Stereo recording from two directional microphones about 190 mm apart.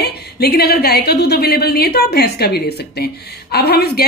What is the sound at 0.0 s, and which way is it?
A woman's voice, 55° left (ahead or behind).